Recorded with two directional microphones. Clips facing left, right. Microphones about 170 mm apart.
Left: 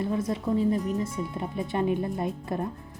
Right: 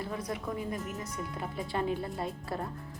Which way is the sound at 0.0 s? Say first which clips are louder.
Left 8 dB; 25° left (ahead or behind).